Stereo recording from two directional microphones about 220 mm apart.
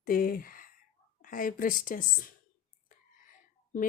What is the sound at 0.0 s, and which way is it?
Speech, 40° left (ahead or behind).